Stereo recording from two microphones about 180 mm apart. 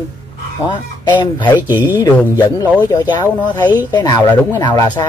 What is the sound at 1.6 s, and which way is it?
Speech, 10° right (ahead or behind).